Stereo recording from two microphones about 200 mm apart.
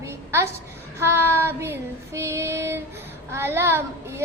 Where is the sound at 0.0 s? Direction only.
15° right (ahead or behind).